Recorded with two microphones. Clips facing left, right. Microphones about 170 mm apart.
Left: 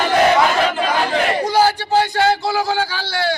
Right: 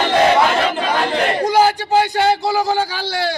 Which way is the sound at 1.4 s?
15° right (ahead or behind).